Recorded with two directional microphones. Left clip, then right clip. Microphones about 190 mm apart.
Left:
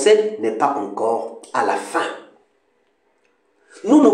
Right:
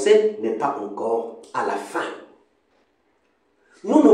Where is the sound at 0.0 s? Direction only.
20° left (ahead or behind).